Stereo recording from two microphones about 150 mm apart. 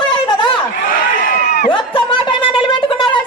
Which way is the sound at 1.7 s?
35° left (ahead or behind).